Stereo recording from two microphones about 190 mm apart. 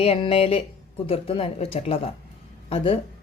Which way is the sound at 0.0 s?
30° left (ahead or behind).